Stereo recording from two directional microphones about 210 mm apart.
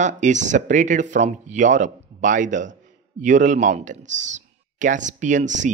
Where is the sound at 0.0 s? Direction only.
35° right (ahead or behind).